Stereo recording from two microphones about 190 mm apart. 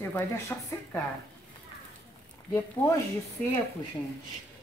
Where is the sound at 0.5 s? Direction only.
10° left (ahead or behind).